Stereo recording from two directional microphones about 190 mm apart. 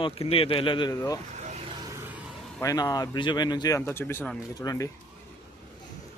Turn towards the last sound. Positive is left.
turn(degrees=20)  # may be behind; listen again after turning